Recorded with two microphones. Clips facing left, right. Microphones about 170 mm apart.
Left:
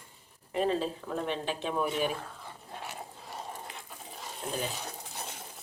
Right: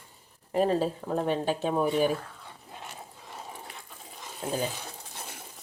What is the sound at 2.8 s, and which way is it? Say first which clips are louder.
Dog: left 2 dB; 5° left (ahead or behind).